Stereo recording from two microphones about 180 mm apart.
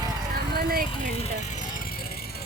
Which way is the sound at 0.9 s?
35° left (ahead or behind).